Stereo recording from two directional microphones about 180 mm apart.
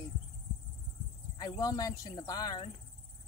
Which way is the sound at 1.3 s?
20° left (ahead or behind).